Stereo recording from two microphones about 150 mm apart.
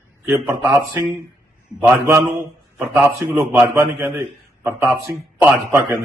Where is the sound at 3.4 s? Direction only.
15° right (ahead or behind).